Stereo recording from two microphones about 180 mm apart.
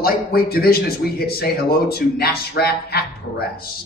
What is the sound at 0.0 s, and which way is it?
Speech, 55° left (ahead or behind).